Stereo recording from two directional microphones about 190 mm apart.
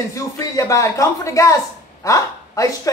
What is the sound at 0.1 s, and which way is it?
A man's voice, 15° left (ahead or behind).